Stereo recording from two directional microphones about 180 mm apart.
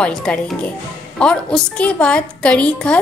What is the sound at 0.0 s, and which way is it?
A woman's voice, 5° left (ahead or behind).